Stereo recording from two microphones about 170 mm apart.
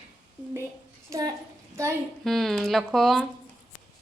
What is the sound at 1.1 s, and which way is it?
Speech, 20° right (ahead or behind).